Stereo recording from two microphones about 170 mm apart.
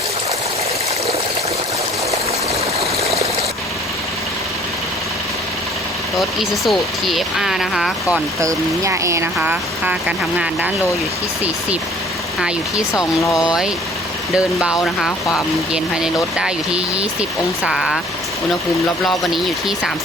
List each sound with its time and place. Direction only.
3.0 s trickle: 35° right (ahead or behind)
6.1 s speech: centre (ahead or behind)
8.1 s speech: 20° right (ahead or behind)
12.4 s speech: 5° right (ahead or behind)
19.0 s speech: centre (ahead or behind)